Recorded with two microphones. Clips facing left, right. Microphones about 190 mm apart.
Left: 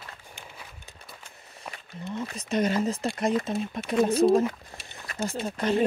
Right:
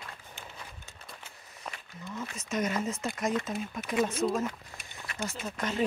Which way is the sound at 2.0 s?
30° left (ahead or behind).